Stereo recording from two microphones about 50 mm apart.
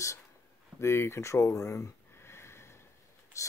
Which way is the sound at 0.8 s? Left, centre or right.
Left.